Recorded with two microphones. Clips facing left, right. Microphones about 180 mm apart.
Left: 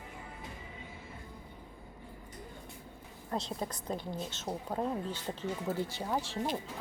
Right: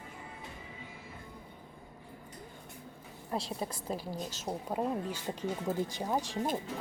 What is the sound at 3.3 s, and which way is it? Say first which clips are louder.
A woman's voice: even; 10° right (ahead or behind).